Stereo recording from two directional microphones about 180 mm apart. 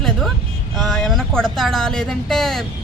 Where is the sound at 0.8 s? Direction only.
Centre (ahead or behind).